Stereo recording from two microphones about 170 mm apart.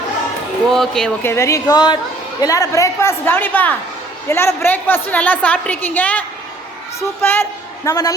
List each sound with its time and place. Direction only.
0.7 s a woman's voice: 5° left (ahead or behind); by 8.1 s 20° left (ahead or behind)